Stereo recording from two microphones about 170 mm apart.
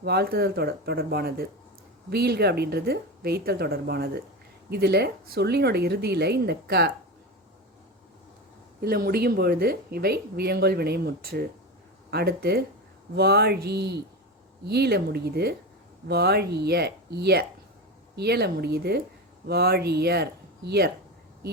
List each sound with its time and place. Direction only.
0.0 s a woman's voice: 70° right (ahead or behind)
8.8 s a woman's voice: 65° right (ahead or behind)